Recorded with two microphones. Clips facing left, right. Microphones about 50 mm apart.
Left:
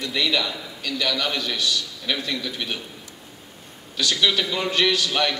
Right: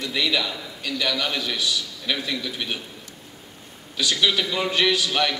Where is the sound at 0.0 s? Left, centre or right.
Centre.